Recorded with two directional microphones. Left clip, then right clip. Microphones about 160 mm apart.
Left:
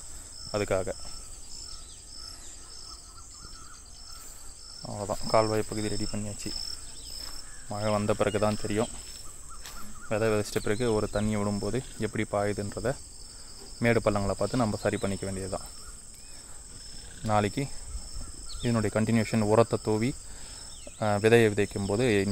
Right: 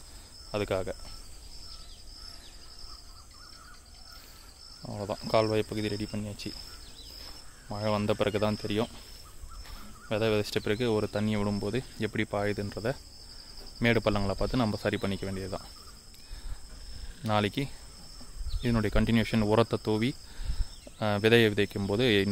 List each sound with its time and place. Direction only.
0.5 s speech: 5° left (ahead or behind)
4.8 s speech: 10° right (ahead or behind)
7.7 s speech: 5° right (ahead or behind)
10.0 s speech: 5° right (ahead or behind)
17.2 s speech: centre (ahead or behind)